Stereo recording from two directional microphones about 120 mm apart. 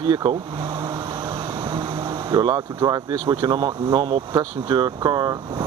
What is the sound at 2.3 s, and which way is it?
Speech, 35° right (ahead or behind).